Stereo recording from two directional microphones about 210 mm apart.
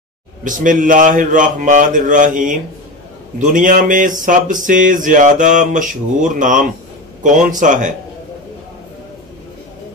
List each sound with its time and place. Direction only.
0.4 s speech: 40° right (ahead or behind)